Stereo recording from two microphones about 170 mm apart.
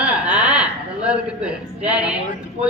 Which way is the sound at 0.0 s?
5° right (ahead or behind).